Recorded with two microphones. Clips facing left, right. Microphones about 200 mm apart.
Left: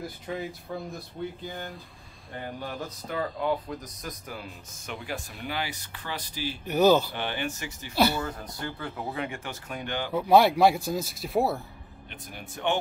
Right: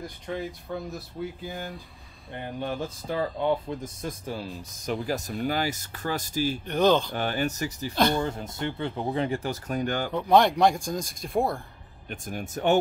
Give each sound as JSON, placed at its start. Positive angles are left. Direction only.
{"t": 0.0, "sound": "speech", "side_deg": 5}
{"t": 2.3, "sound": "speech", "side_deg": -25}
{"t": 6.6, "sound": "speech", "side_deg": 5}
{"t": 7.2, "sound": "speech", "side_deg": -40}
{"t": 7.9, "sound": "speech", "side_deg": 5}
{"t": 8.3, "sound": "speech", "side_deg": -25}
{"t": 10.1, "sound": "speech", "side_deg": 5}
{"t": 12.1, "sound": "speech", "side_deg": -45}